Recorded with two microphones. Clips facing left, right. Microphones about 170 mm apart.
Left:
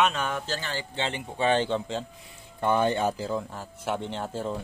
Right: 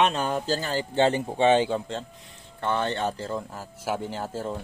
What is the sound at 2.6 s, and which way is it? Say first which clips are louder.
Speech: left 3 dB; 10° left (ahead or behind).